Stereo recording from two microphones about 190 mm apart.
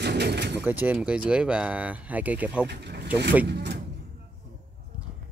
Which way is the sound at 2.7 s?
60° right (ahead or behind).